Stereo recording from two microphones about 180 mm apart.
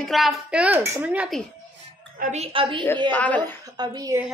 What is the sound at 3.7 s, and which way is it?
Speech, 20° right (ahead or behind).